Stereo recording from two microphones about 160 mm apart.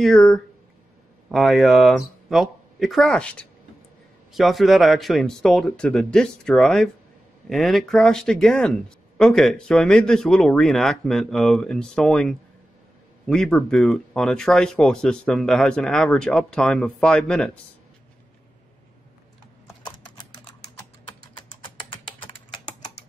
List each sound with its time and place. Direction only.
0.0 s speech: centre (ahead or behind)
21.4 s typing: 30° left (ahead or behind)